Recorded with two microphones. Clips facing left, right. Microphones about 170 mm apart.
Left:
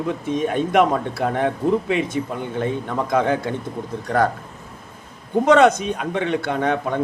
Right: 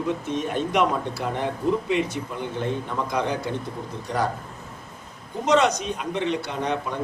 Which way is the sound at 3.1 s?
50° left (ahead or behind).